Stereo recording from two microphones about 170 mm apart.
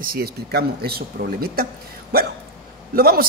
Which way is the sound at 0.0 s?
65° right (ahead or behind).